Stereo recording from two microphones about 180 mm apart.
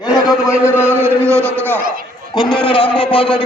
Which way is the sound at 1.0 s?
15° right (ahead or behind).